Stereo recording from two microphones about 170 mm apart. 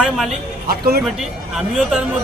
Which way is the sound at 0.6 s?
60° right (ahead or behind).